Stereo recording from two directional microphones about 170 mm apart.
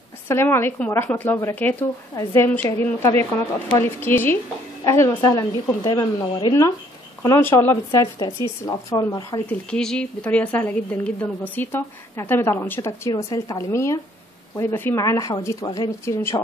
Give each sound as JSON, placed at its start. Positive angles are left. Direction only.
{"t": 0.3, "sound": "a woman's voice", "side_deg": 15}
{"t": 9.5, "sound": "a woman's voice", "side_deg": 5}